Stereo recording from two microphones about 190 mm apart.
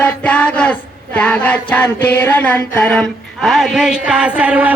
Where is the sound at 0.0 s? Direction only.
10° left (ahead or behind).